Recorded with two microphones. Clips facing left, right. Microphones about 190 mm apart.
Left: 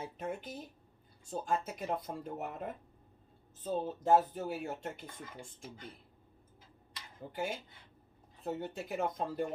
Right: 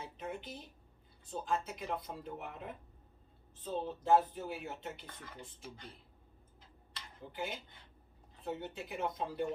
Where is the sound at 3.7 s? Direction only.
45° left (ahead or behind).